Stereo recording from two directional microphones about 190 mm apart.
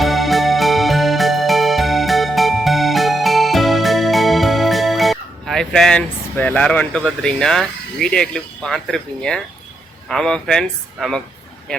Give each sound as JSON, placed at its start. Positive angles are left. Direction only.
{"t": 0.0, "sound": "music", "side_deg": 0}
{"t": 10.1, "sound": "speech", "side_deg": 5}